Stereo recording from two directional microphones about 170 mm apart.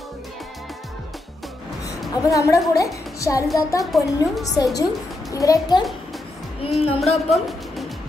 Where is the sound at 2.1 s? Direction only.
20° left (ahead or behind).